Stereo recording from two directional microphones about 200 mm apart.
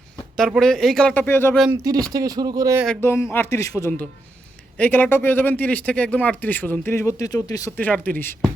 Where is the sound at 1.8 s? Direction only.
20° right (ahead or behind).